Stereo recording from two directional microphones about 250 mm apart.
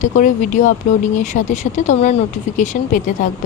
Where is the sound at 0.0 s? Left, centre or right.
Left.